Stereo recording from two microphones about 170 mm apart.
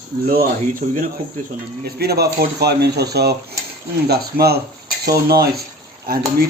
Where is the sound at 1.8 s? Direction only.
70° right (ahead or behind).